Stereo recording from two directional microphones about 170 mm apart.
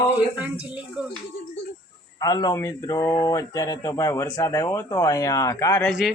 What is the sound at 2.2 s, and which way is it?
Speech, 20° left (ahead or behind).